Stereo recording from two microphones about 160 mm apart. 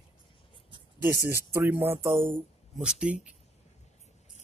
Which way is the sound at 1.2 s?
15° right (ahead or behind).